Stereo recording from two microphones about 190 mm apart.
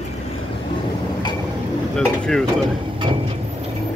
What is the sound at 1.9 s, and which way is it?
Speech, 5° left (ahead or behind).